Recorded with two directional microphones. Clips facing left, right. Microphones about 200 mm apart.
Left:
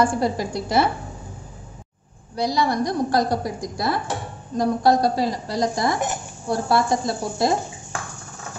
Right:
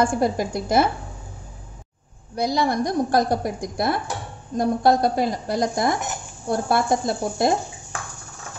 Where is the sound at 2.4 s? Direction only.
50° right (ahead or behind).